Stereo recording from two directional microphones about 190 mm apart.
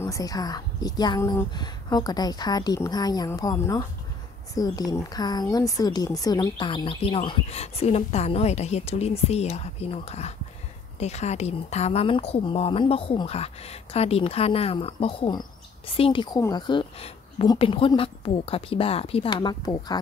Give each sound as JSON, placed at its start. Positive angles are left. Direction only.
{"t": 0.0, "sound": "speech", "side_deg": 15}